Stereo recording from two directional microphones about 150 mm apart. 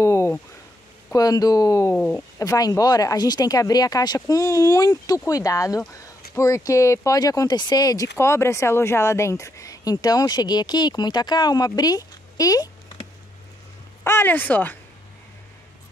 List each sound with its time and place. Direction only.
0.0 s a sound: 20° left (ahead or behind)
1.1 s speech: 25° left (ahead or behind)
2.4 s speech: 20° left (ahead or behind)
14.0 s speech: 15° left (ahead or behind)